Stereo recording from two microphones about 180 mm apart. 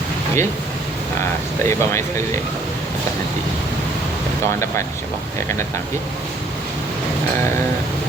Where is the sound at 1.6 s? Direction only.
15° left (ahead or behind).